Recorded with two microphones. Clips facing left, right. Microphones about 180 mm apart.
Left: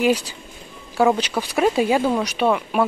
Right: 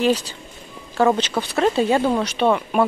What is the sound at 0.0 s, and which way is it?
Speech, 10° left (ahead or behind).